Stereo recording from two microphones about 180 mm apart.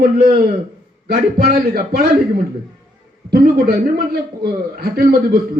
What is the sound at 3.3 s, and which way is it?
A man's voice, 60° right (ahead or behind).